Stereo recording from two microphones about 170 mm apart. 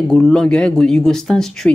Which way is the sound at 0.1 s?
5° left (ahead or behind).